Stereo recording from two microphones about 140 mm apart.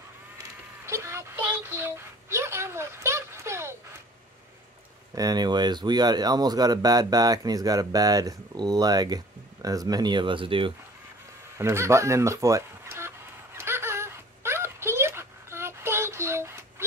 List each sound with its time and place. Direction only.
0.8 s a child's voice: 20° right (ahead or behind)
5.1 s speech: 25° right (ahead or behind)
11.5 s speech: 20° right (ahead or behind)
13.6 s a sound: 15° right (ahead or behind)